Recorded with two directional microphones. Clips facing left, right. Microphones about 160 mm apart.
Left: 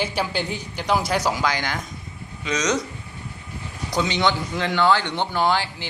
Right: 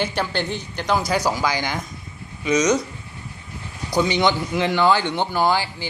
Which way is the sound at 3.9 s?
10° right (ahead or behind).